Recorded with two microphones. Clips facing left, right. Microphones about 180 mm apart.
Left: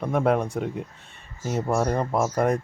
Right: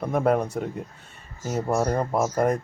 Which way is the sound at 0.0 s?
5° right (ahead or behind).